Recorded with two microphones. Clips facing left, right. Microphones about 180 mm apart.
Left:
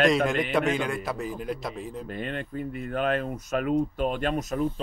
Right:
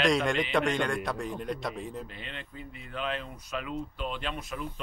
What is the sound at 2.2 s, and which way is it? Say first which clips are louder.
Speech: left 11 dB; 50° left (ahead or behind).